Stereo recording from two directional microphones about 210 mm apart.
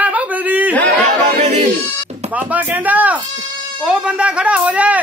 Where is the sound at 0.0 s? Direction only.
5° right (ahead or behind).